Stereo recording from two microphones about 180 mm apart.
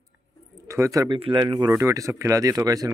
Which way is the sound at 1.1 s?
30° right (ahead or behind).